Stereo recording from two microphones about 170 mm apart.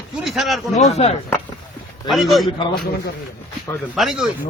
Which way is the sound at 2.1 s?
Centre (ahead or behind).